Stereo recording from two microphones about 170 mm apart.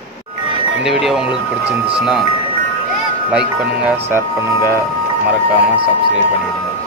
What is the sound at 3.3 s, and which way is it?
Speech, 5° right (ahead or behind).